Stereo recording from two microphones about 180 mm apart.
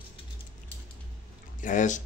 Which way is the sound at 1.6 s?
45° left (ahead or behind).